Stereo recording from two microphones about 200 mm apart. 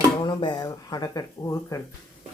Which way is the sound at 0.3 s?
20° left (ahead or behind).